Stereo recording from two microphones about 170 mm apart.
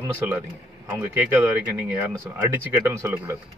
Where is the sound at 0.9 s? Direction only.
10° right (ahead or behind).